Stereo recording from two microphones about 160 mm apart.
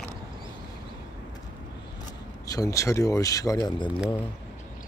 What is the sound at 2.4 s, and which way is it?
Speech, 20° left (ahead or behind).